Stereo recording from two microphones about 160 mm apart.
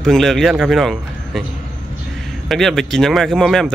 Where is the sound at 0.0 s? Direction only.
5° left (ahead or behind).